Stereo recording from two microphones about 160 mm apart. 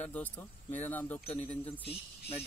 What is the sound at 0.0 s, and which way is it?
Speech, 10° left (ahead or behind).